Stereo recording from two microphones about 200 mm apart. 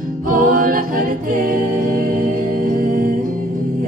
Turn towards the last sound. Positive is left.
turn(degrees=-45)  # may be behind; listen again after turning